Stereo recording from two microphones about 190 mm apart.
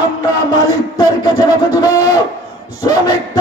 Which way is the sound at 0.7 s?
20° left (ahead or behind).